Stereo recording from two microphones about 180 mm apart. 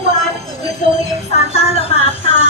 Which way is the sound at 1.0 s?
35° left (ahead or behind).